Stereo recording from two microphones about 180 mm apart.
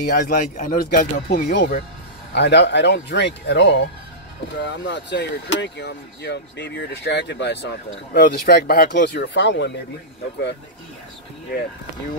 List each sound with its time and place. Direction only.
0.0 s speech: 55° left (ahead or behind)
1.5 s speech: 65° left (ahead or behind)